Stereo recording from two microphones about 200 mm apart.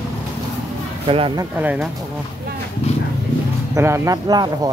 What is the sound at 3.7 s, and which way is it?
Speech, 15° right (ahead or behind).